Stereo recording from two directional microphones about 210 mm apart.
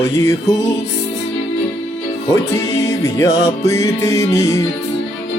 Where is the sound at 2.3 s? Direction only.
15° left (ahead or behind).